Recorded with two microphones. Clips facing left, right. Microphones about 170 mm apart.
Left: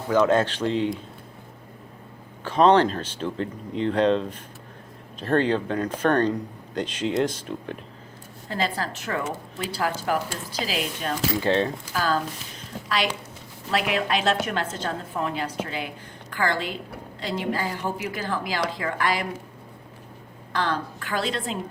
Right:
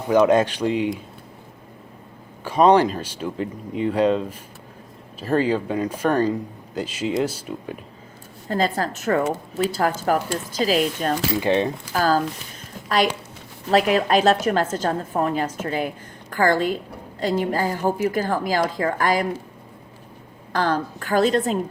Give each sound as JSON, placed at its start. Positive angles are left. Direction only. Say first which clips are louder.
{"t": 0.1, "sound": "speech", "louder": "right 4 dB", "side_deg": -15}
{"t": 2.4, "sound": "speech", "louder": "right 2 dB", "side_deg": -10}
{"t": 8.4, "sound": "a woman's voice", "louder": "right 5 dB", "side_deg": -45}
{"t": 11.3, "sound": "speech", "louder": "right 1 dB", "side_deg": -15}
{"t": 11.9, "sound": "a woman's voice", "louder": "right 5 dB", "side_deg": -40}
{"t": 13.7, "sound": "a woman's voice", "louder": "right 7 dB", "side_deg": -40}
{"t": 20.5, "sound": "a woman's voice", "louder": "right 4 dB", "side_deg": -45}